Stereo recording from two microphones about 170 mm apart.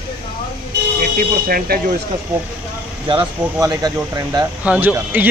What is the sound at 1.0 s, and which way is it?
Speech, 55° right (ahead or behind).